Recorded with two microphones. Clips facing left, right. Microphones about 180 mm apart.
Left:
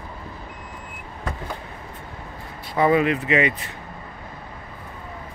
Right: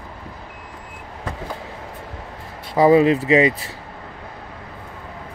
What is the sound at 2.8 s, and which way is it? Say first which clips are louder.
Speech: right 5 dB; 30° right (ahead or behind).